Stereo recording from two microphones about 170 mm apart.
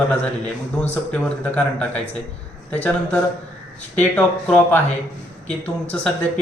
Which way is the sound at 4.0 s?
5° left (ahead or behind).